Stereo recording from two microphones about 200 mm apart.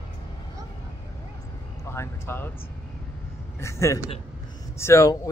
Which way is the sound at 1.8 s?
15° left (ahead or behind).